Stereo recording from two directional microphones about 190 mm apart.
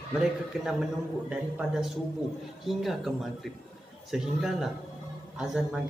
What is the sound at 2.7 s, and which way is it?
A man's voice, centre (ahead or behind).